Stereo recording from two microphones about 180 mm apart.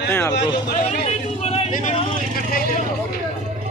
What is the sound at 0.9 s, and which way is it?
Speech, 35° left (ahead or behind).